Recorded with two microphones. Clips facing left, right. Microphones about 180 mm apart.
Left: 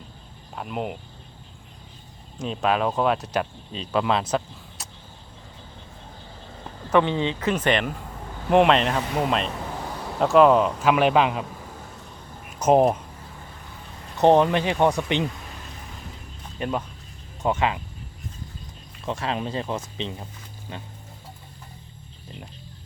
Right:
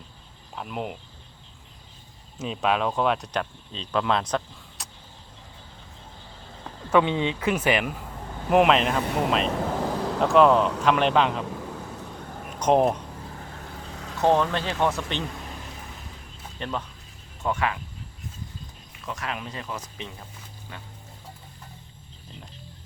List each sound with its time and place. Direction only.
0.5 s speech: centre (ahead or behind)
2.4 s speech: centre (ahead or behind)
6.9 s speech: 5° right (ahead or behind)
12.5 s speech: 5° left (ahead or behind)
14.2 s speech: 20° left (ahead or behind)
16.6 s speech: 10° left (ahead or behind)
17.4 s speech: 20° left (ahead or behind)
19.0 s speech: 30° left (ahead or behind)